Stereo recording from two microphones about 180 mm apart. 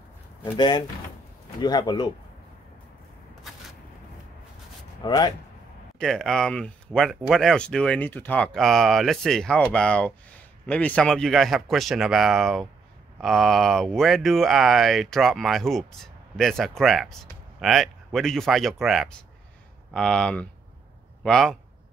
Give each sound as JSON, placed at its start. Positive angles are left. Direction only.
{"t": 0.6, "sound": "speech", "side_deg": 25}
{"t": 5.0, "sound": "speech", "side_deg": 25}
{"t": 5.9, "sound": "a man's voice", "side_deg": 0}